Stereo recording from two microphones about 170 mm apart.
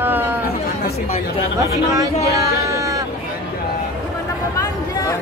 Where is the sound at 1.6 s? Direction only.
20° right (ahead or behind).